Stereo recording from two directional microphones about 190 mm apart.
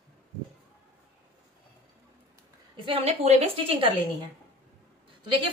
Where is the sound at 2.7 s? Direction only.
30° right (ahead or behind).